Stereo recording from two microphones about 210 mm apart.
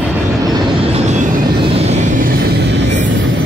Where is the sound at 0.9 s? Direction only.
35° right (ahead or behind).